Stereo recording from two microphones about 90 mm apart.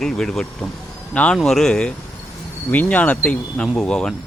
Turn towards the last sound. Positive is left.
turn(degrees=5)  # may be behind; listen again after turning